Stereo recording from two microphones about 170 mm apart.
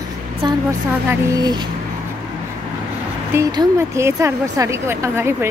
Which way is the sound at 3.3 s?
15° right (ahead or behind).